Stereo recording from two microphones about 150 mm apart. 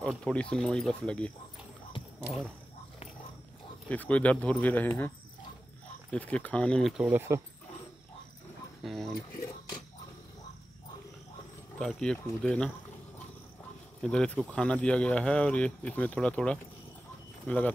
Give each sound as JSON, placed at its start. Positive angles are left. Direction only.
{"t": 0.0, "sound": "speech", "side_deg": 5}
{"t": 3.9, "sound": "speech", "side_deg": 10}
{"t": 6.1, "sound": "speech", "side_deg": 10}
{"t": 7.0, "sound": "speech", "side_deg": -15}
{"t": 8.8, "sound": "speech", "side_deg": 0}
{"t": 11.8, "sound": "speech", "side_deg": 5}
{"t": 14.0, "sound": "speech", "side_deg": 5}